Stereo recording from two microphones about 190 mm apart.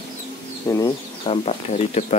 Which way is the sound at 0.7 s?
15° left (ahead or behind).